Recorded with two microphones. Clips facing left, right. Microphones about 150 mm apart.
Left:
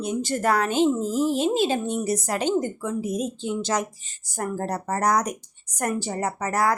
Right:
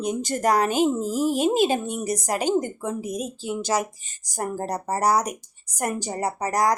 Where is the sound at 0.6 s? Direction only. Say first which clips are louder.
Even; 10° right (ahead or behind).